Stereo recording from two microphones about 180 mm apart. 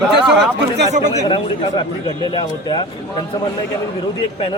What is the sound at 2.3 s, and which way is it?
Speech, 25° left (ahead or behind).